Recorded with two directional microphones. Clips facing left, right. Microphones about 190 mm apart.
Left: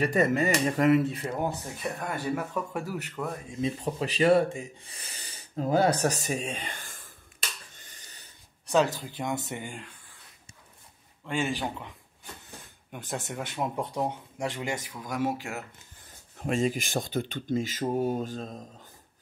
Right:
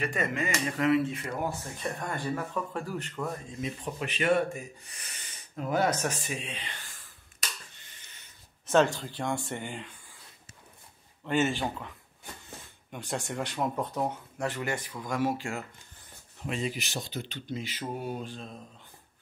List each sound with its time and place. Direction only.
0.0 s speech: 40° left (ahead or behind)
1.2 s speech: 20° left (ahead or behind)
1.8 s speech: 5° left (ahead or behind)
3.6 s speech: 35° left (ahead or behind)
7.7 s a sound: 45° left (ahead or behind)
8.6 s speech: centre (ahead or behind)
11.2 s speech: centre (ahead or behind)
12.9 s speech: 5° left (ahead or behind)
16.3 s speech: 45° left (ahead or behind)